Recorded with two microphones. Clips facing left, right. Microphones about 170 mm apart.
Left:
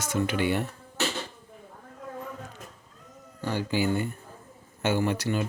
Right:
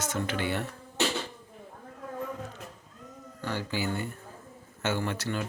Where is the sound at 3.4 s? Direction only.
15° left (ahead or behind).